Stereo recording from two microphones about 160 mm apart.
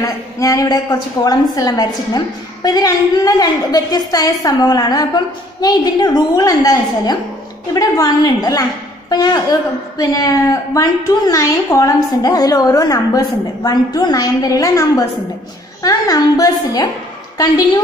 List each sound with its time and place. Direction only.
0.0 s a woman's voice: 20° left (ahead or behind)